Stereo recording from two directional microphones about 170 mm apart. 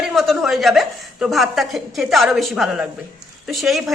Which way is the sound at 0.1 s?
Centre (ahead or behind).